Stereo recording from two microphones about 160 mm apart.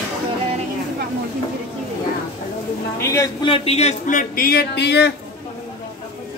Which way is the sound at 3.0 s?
20° left (ahead or behind).